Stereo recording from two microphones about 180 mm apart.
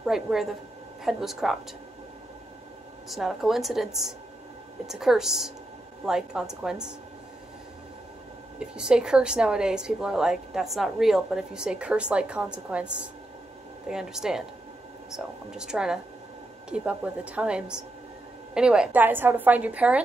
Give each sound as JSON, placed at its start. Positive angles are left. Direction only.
{"t": 0.0, "sound": "a woman's voice", "side_deg": 0}
{"t": 3.1, "sound": "a woman's voice", "side_deg": 0}
{"t": 8.5, "sound": "a woman's voice", "side_deg": -5}